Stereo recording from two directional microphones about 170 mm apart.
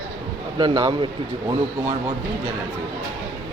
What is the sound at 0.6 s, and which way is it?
Speech, 25° right (ahead or behind).